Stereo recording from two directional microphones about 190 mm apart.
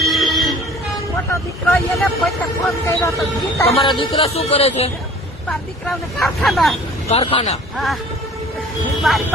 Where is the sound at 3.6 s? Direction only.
30° left (ahead or behind).